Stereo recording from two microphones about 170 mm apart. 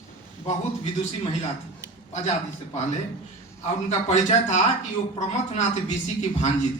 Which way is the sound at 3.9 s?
45° left (ahead or behind).